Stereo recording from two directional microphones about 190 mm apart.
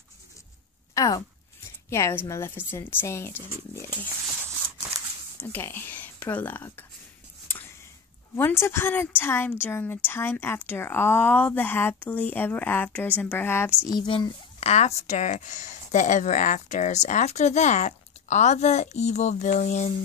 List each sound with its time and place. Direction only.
0.9 s a woman's voice: 20° left (ahead or behind)
5.5 s speech: 10° left (ahead or behind)
7.4 s a sound: 10° left (ahead or behind)
8.4 s a woman's voice: 15° left (ahead or behind)
13.8 s speech: 25° left (ahead or behind)